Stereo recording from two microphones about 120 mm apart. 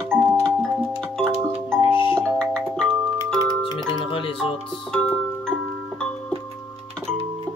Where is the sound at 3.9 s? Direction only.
45° left (ahead or behind).